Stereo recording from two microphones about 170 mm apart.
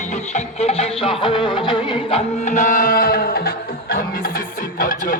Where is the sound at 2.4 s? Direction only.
45° left (ahead or behind).